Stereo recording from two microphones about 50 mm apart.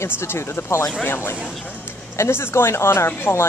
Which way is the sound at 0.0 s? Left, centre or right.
Left.